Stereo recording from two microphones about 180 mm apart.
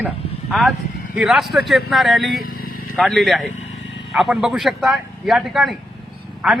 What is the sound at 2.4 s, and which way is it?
Vehicle, 55° left (ahead or behind).